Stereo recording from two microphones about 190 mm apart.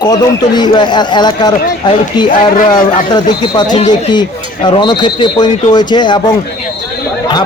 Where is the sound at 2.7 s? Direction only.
20° left (ahead or behind).